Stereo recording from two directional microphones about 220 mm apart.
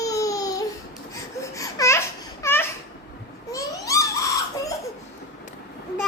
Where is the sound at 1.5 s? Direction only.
15° left (ahead or behind).